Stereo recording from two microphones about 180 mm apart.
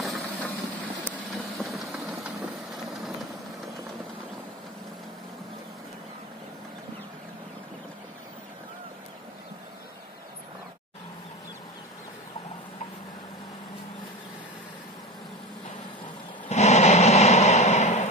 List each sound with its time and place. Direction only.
0.0 s vehicle: centre (ahead or behind)
1.6 s vehicle: centre (ahead or behind)
16.4 s a sound: 40° left (ahead or behind)